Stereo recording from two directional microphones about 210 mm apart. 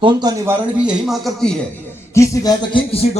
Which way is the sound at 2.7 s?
30° left (ahead or behind).